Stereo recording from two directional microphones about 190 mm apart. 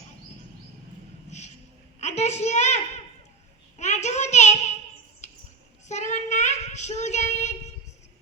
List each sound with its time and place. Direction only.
2.0 s a child's voice: 35° left (ahead or behind)
3.8 s child singing: 35° left (ahead or behind)
5.9 s child singing: 40° left (ahead or behind)